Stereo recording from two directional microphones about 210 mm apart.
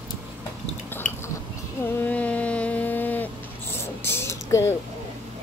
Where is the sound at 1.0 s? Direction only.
35° left (ahead or behind).